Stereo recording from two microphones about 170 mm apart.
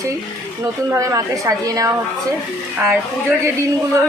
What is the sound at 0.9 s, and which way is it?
A woman's voice, 20° right (ahead or behind).